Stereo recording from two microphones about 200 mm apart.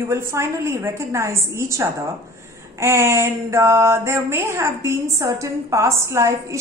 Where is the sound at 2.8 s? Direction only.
10° right (ahead or behind).